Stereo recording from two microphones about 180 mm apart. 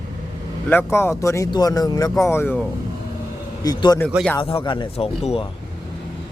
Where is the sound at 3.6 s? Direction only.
20° left (ahead or behind).